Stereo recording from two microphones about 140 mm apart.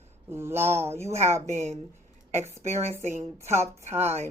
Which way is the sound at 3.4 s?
20° right (ahead or behind).